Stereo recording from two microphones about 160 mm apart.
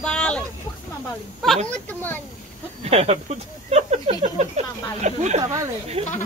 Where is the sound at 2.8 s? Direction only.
40° right (ahead or behind).